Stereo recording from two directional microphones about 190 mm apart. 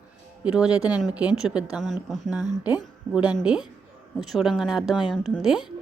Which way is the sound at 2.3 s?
20° left (ahead or behind).